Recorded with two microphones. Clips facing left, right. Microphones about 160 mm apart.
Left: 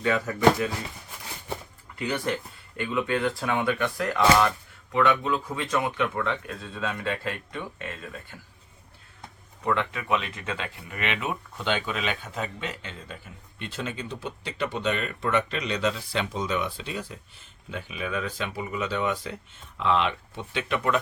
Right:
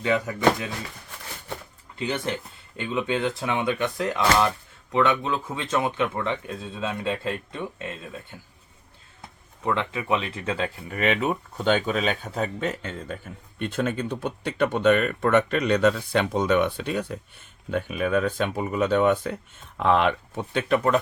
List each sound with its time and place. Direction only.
0.0 s speech: 20° right (ahead or behind)
2.0 s speech: 20° right (ahead or behind)
9.6 s speech: 25° right (ahead or behind)